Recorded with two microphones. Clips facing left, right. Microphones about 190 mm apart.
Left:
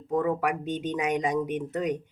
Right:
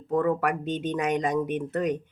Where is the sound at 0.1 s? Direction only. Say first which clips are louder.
Right 2 dB; 10° left (ahead or behind).